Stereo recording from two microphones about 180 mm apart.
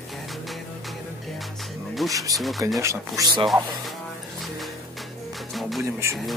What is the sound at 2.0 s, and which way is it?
Speech, centre (ahead or behind).